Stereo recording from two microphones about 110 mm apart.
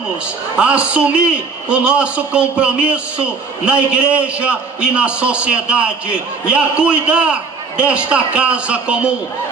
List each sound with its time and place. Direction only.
0.6 s a man's voice: 10° right (ahead or behind)